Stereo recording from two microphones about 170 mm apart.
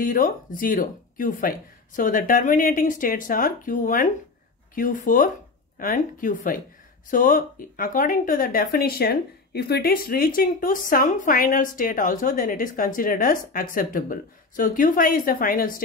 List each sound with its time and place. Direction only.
0.0 s speech: 55° left (ahead or behind)